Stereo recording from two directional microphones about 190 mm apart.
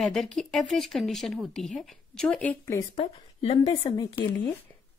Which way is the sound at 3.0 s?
30° left (ahead or behind).